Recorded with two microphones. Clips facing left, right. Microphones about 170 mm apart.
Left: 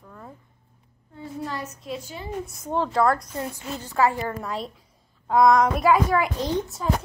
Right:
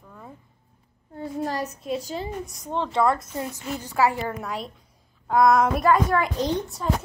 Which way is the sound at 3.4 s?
15° right (ahead or behind).